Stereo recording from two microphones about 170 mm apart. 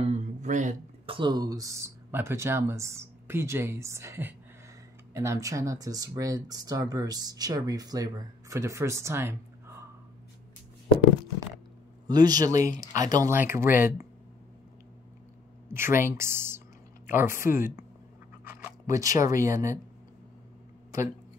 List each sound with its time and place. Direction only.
0.0 s a sound: 45° right (ahead or behind)
1.0 s speech: 30° right (ahead or behind)
12.1 s speech: 25° right (ahead or behind)
15.7 s speech: 15° right (ahead or behind)
18.4 s a sound: 15° right (ahead or behind)
19.2 s speech: 20° right (ahead or behind)